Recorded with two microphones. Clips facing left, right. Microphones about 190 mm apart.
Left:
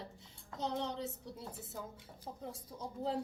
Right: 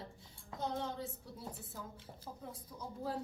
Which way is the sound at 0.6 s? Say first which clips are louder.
Left 2 dB; 20° left (ahead or behind).